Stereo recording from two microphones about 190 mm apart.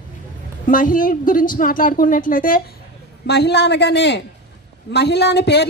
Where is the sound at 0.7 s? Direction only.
45° left (ahead or behind).